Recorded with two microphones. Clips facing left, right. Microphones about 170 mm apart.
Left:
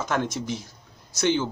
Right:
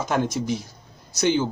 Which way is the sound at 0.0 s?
10° right (ahead or behind).